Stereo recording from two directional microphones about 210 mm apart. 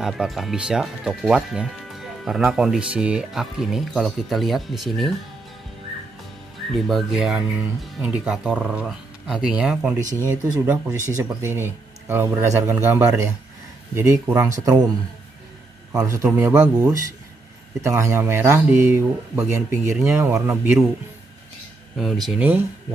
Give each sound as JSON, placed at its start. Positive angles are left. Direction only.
{"t": 0.0, "sound": "speech", "side_deg": 0}
{"t": 6.7, "sound": "speech", "side_deg": 0}
{"t": 15.9, "sound": "speech", "side_deg": -15}
{"t": 21.9, "sound": "speech", "side_deg": 0}